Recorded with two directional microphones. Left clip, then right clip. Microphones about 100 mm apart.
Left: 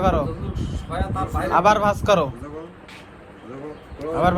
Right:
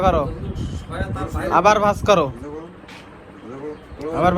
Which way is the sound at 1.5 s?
30° left (ahead or behind).